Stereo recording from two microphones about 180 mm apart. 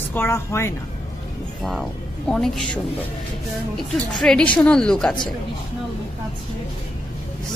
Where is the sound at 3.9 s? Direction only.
5° left (ahead or behind).